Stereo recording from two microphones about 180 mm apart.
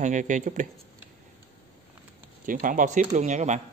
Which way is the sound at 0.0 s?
45° right (ahead or behind).